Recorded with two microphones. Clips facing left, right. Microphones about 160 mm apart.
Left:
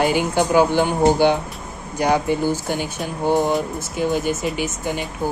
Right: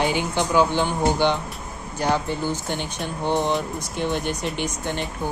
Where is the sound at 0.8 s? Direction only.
10° left (ahead or behind).